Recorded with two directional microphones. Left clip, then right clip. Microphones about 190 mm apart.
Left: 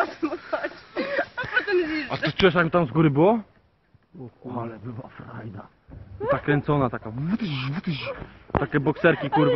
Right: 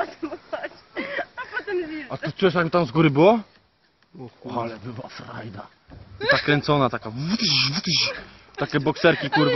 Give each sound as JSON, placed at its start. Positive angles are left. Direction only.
{"t": 0.0, "sound": "a sound", "side_deg": 35}
{"t": 2.0, "sound": "speech", "side_deg": -65}
{"t": 4.5, "sound": "speech", "side_deg": -85}